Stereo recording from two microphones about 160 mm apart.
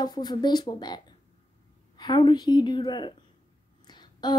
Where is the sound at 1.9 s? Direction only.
25° left (ahead or behind).